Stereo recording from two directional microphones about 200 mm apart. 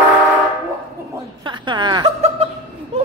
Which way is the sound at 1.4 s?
25° right (ahead or behind).